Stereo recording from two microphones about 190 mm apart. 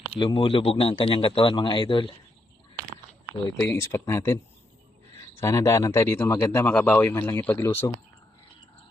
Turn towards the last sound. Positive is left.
turn(degrees=10)  # may be behind; listen again after turning